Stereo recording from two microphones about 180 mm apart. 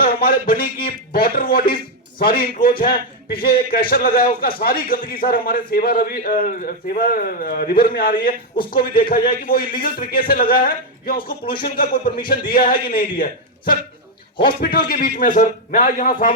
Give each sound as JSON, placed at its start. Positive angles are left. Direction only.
{"t": 0.0, "sound": "a sound", "side_deg": 55}
{"t": 0.9, "sound": "a man's voice", "side_deg": 55}
{"t": 14.4, "sound": "a man's voice", "side_deg": 55}